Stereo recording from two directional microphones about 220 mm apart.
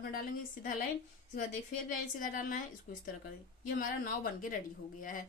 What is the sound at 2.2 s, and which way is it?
Speech, 35° left (ahead or behind).